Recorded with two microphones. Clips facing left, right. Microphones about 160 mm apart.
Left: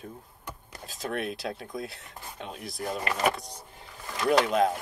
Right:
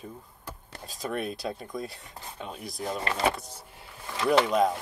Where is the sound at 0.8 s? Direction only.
Centre (ahead or behind).